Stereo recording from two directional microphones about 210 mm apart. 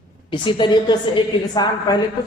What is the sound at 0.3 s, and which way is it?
A woman's voice, 25° left (ahead or behind).